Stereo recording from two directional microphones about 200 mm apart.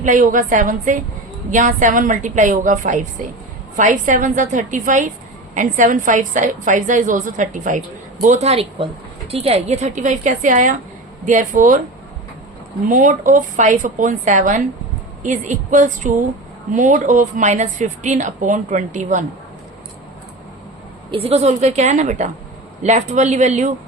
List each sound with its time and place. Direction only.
0.0 s a woman's voice: 40° right (ahead or behind)
12.9 s a woman's voice: 40° right (ahead or behind)
21.1 s a woman's voice: 30° right (ahead or behind)